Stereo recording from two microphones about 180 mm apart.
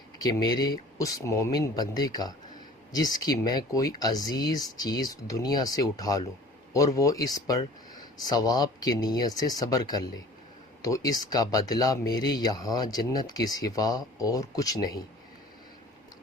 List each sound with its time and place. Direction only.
0.2 s speech: 20° left (ahead or behind)